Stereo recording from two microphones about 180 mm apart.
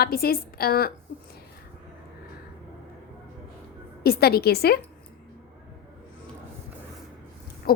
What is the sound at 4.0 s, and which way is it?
Speech, 60° left (ahead or behind).